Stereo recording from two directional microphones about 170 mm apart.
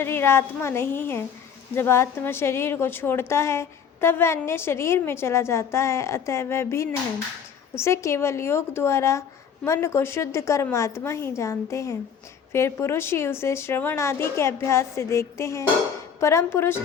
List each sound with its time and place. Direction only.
0.0 s a woman's voice: 15° left (ahead or behind)